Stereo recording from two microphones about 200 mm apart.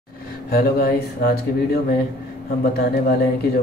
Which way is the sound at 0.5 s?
50° left (ahead or behind).